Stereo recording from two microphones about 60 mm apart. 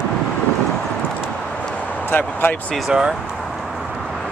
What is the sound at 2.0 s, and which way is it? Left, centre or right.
Speech, left.